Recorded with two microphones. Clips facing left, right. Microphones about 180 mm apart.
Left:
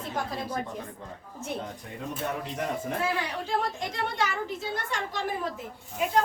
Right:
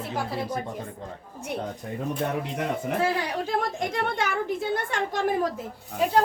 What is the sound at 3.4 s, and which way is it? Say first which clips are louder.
A woman's voice: right 3 dB; 50° right (ahead or behind).